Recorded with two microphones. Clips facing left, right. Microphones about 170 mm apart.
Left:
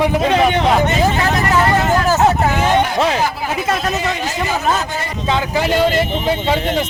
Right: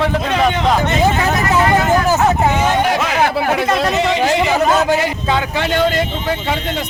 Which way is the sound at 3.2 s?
65° right (ahead or behind).